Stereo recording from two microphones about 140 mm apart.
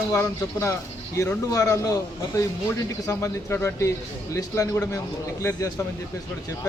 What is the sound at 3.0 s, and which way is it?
Speech, 20° left (ahead or behind).